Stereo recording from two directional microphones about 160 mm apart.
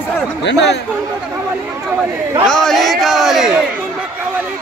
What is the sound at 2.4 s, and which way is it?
Speech, 5° left (ahead or behind).